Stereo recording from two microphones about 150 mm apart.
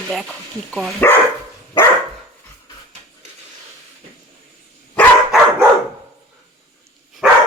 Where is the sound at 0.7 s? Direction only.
Centre (ahead or behind).